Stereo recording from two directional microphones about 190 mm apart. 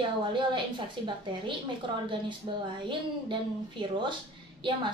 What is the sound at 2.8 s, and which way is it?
A woman's voice, 25° right (ahead or behind).